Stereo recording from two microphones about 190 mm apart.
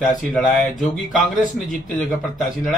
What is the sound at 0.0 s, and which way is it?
Speech, centre (ahead or behind).